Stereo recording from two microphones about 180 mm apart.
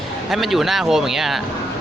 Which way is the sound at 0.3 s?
Centre (ahead or behind).